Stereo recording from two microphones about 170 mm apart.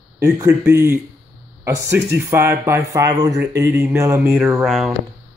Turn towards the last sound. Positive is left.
turn(degrees=0)  # may be behind; listen again after turning